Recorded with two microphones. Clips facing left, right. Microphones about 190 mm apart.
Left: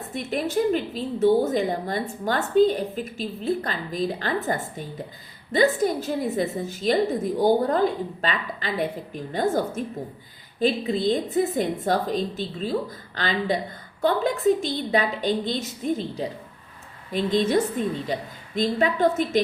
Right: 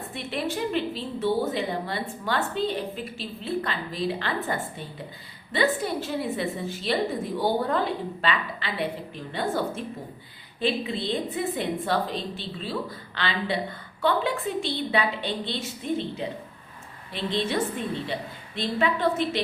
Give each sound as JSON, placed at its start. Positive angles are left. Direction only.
{"t": 0.1, "sound": "a woman's voice", "side_deg": 45}